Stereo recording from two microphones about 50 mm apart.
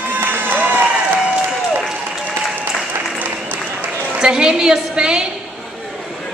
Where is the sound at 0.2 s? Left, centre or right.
Right.